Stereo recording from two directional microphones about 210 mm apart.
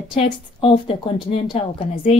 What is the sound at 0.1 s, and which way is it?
Speech, 25° left (ahead or behind).